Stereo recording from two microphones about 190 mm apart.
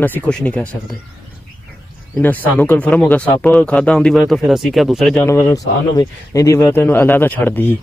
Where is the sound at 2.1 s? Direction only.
10° left (ahead or behind).